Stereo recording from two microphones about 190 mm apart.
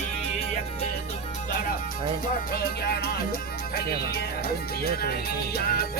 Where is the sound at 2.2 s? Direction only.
55° left (ahead or behind).